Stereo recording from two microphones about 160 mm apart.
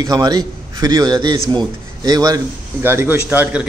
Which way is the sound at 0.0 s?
25° right (ahead or behind).